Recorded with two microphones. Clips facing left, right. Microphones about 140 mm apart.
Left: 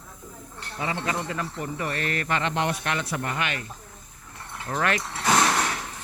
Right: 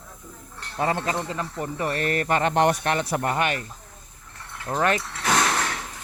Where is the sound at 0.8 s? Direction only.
45° right (ahead or behind).